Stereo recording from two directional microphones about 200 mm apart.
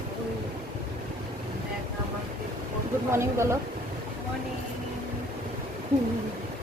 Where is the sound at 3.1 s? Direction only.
15° right (ahead or behind).